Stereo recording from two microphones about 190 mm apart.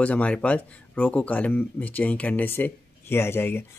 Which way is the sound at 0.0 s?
5° left (ahead or behind).